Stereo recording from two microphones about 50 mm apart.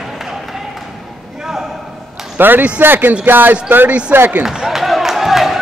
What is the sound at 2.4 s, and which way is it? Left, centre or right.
Speech, right.